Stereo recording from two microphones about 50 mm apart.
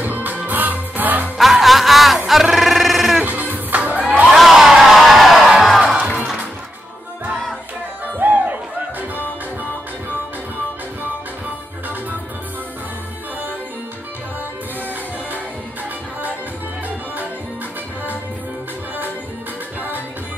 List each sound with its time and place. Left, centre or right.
0.0 s music: right
1.4 s music: centre
3.3 s music: right
4.3 s a sound: centre
5.7 s crowd: centre
8.2 s music: right